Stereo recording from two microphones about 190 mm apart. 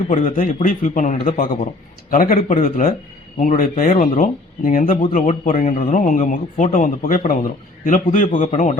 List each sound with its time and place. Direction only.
0.1 s a man's voice: 40° left (ahead or behind)
5.0 s speech: 35° left (ahead or behind)